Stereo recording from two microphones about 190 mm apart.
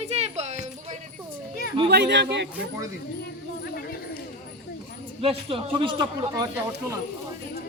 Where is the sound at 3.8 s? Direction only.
50° left (ahead or behind).